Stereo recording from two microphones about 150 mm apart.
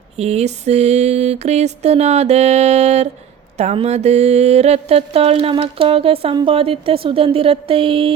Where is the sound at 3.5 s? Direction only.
45° right (ahead or behind).